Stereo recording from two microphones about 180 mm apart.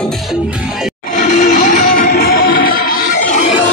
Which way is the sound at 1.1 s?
45° left (ahead or behind).